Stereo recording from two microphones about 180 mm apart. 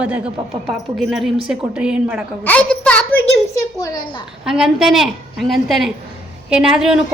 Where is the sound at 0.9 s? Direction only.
Centre (ahead or behind).